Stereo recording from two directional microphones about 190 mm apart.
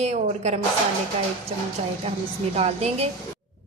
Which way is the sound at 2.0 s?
35° right (ahead or behind).